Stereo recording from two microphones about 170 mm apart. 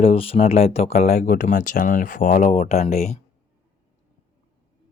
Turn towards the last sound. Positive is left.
turn(degrees=40)  # may be behind; listen again after turning